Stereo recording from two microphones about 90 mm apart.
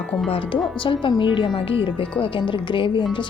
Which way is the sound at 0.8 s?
65° left (ahead or behind).